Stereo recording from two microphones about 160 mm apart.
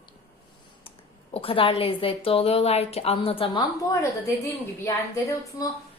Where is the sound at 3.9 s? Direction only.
20° left (ahead or behind).